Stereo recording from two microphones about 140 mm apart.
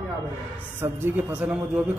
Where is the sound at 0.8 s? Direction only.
15° right (ahead or behind).